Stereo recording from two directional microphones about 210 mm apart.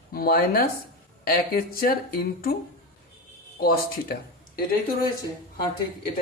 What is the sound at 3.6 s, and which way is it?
Speech, 45° left (ahead or behind).